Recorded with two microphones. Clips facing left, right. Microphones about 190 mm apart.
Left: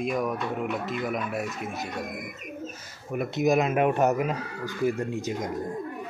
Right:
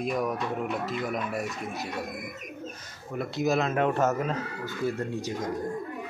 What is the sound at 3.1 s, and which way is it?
Speech, 15° left (ahead or behind).